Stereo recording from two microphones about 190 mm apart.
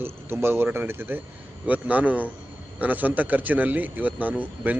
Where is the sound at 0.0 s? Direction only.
10° right (ahead or behind).